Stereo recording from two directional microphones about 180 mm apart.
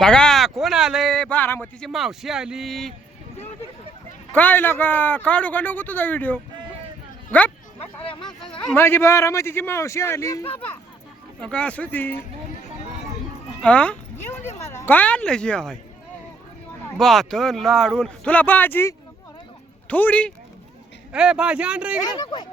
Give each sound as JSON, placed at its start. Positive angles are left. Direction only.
{"t": 0.0, "sound": "speech", "side_deg": 5}
{"t": 4.3, "sound": "speech", "side_deg": 10}
{"t": 7.8, "sound": "speech", "side_deg": 30}
{"t": 8.6, "sound": "speech", "side_deg": 10}
{"t": 13.6, "sound": "speech", "side_deg": 5}
{"t": 17.0, "sound": "speech", "side_deg": 0}
{"t": 21.1, "sound": "speech", "side_deg": -5}
{"t": 22.0, "sound": "speech", "side_deg": 25}